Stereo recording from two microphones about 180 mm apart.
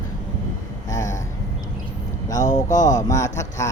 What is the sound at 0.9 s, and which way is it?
Speech, 20° left (ahead or behind).